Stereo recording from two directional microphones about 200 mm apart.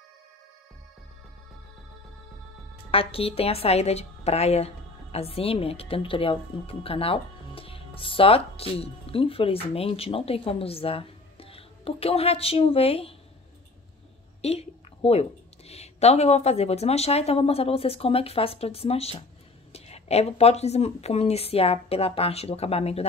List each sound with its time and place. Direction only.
2.9 s a woman's voice: 30° left (ahead or behind)
14.4 s a woman's voice: 30° left (ahead or behind)